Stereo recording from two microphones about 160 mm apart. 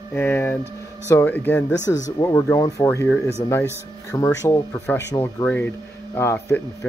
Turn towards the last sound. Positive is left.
turn(degrees=15)  # may be behind; listen again after turning